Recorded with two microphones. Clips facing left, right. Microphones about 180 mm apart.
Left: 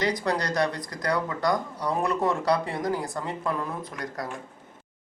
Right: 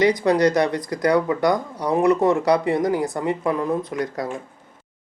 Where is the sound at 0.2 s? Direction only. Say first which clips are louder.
Right 8 dB; 20° right (ahead or behind).